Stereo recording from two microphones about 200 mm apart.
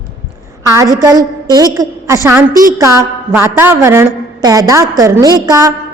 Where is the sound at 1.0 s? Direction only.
20° right (ahead or behind).